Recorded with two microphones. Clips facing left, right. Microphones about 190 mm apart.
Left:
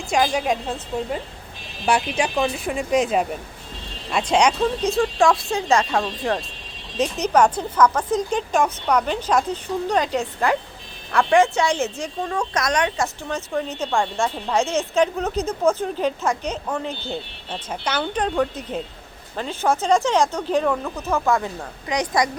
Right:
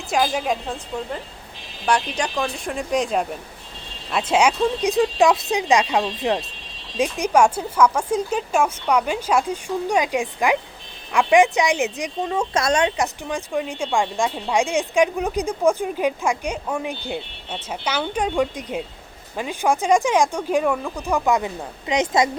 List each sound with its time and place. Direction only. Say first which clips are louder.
0.1 s speech: left 1 dB; centre (ahead or behind)
1.9 s a woman's voice: left 1 dB; 5° left (ahead or behind); by 13.1 s 25° right (ahead or behind)
13.2 s a woman's voice: right 1 dB; 15° right (ahead or behind)